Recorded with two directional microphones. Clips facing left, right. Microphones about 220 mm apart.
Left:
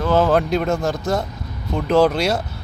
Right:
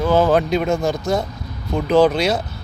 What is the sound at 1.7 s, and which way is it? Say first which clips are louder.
Speech: right 2 dB; 10° right (ahead or behind).